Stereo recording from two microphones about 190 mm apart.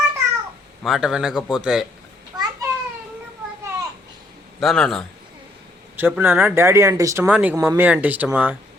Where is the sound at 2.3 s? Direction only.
20° right (ahead or behind).